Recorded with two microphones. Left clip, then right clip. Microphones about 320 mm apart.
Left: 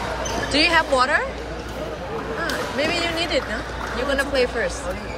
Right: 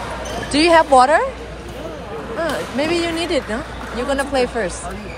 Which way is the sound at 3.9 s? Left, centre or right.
Centre.